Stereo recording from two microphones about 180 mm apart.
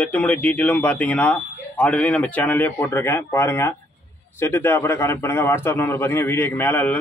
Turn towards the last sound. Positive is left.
turn(degrees=10)  # may be behind; listen again after turning